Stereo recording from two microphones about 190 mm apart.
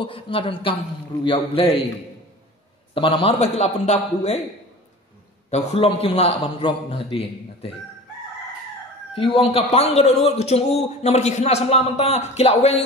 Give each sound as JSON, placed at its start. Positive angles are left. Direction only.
{"t": 0.0, "sound": "a man's voice", "side_deg": 30}
{"t": 2.9, "sound": "a man's voice", "side_deg": 25}
{"t": 5.5, "sound": "a man's voice", "side_deg": 30}
{"t": 9.1, "sound": "a man's voice", "side_deg": 30}